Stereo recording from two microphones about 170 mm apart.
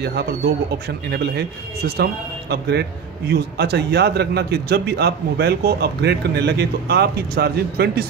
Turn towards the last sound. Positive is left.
turn(degrees=-65)  # may be behind; listen again after turning